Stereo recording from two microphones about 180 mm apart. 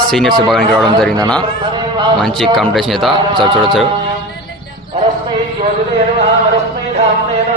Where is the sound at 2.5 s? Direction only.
Centre (ahead or behind).